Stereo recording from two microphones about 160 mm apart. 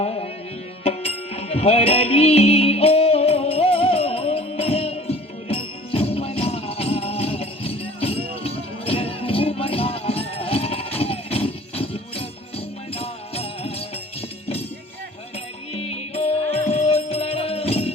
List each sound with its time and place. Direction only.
0.0 s tabla: 40° left (ahead or behind)
0.9 s music: 40° left (ahead or behind)
15.7 s music: 40° left (ahead or behind)